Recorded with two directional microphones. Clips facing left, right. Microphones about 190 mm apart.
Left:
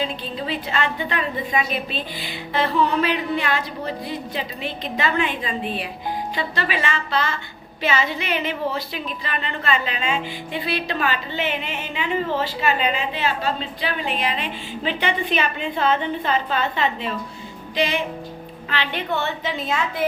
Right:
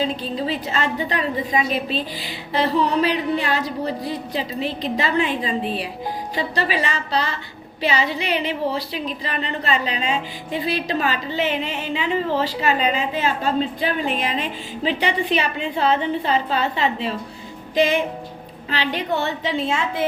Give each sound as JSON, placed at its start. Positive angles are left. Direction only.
{"t": 0.0, "sound": "speech", "side_deg": -35}
{"t": 17.7, "sound": "speech", "side_deg": -45}